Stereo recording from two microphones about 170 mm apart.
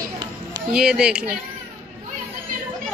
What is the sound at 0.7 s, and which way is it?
Speech, 5° right (ahead or behind).